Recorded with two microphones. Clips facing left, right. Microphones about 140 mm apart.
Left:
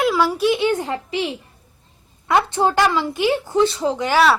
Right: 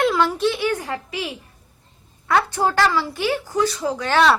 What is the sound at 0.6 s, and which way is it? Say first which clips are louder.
A woman's voice: left 3 dB; 25° left (ahead or behind).